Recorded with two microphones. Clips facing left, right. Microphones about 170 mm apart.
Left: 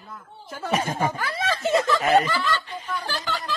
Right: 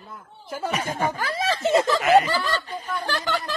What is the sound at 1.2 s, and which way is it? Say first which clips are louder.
Speech: right 2 dB; 30° right (ahead or behind).